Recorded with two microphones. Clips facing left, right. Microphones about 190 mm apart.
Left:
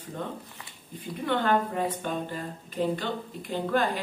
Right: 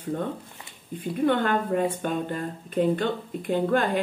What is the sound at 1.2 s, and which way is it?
A woman's voice, 50° right (ahead or behind).